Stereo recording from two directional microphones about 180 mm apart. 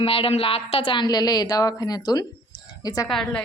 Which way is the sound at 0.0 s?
30° left (ahead or behind).